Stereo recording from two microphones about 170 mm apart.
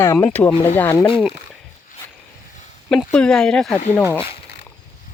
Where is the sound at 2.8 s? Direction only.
5° left (ahead or behind).